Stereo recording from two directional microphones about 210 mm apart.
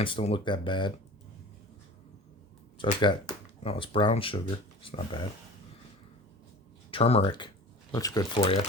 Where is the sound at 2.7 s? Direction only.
20° left (ahead or behind).